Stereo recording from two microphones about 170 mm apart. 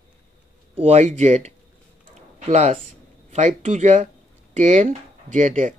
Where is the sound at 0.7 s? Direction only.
40° right (ahead or behind).